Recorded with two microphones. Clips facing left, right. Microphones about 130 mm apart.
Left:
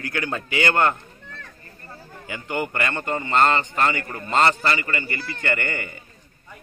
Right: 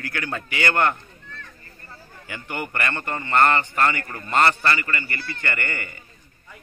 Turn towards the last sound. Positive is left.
turn(degrees=20)  # may be behind; listen again after turning